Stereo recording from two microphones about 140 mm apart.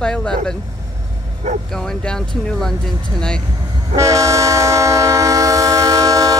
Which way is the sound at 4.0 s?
20° right (ahead or behind).